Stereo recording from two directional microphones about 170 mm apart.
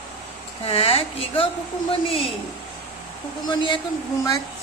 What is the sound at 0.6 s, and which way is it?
Speech, 35° left (ahead or behind).